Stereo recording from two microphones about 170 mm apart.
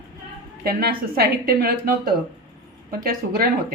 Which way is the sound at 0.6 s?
65° right (ahead or behind).